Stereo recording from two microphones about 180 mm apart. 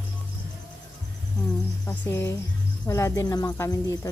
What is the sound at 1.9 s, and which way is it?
Speech, 15° left (ahead or behind).